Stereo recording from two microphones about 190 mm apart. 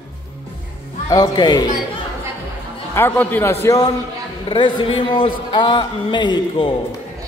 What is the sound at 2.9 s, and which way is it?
Speech, 10° left (ahead or behind).